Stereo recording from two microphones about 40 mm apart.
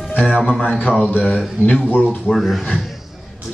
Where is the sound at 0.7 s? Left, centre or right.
Left.